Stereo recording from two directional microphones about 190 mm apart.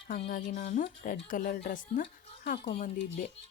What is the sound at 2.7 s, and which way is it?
Speech, 35° left (ahead or behind).